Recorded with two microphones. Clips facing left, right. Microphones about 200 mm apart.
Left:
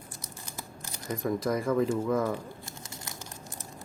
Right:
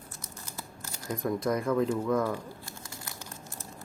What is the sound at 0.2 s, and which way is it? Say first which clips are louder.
Scissors: even; 15° left (ahead or behind).